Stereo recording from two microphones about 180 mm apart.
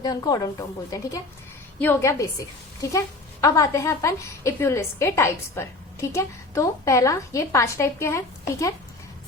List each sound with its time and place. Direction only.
0.0 s a woman's voice: 20° left (ahead or behind)